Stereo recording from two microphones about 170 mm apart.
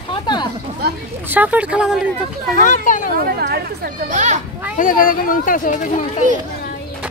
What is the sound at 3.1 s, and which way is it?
Speech, 65° right (ahead or behind).